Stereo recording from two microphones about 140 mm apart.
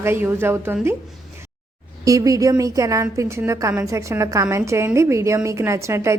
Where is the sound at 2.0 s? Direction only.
25° right (ahead or behind).